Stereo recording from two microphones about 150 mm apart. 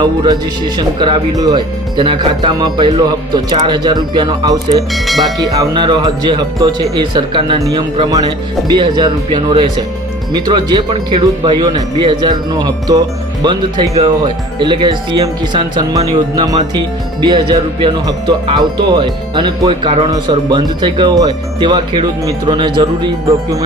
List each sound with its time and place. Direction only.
0.0 s speech: 30° right (ahead or behind)
4.9 s speech: centre (ahead or behind)
5.4 s speech: 25° right (ahead or behind)